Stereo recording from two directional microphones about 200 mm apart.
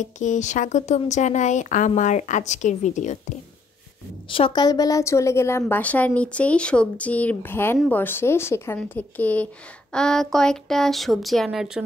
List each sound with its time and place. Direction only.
0.0 s speech: 40° left (ahead or behind)
4.3 s speech: 25° left (ahead or behind); by 11.8 s centre (ahead or behind)